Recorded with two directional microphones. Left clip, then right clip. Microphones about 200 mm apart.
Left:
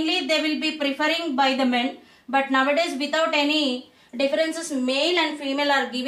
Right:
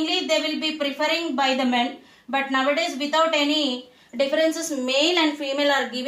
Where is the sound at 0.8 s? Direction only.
20° right (ahead or behind).